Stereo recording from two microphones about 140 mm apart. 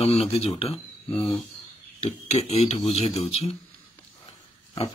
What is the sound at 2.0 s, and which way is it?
Speech, 50° left (ahead or behind).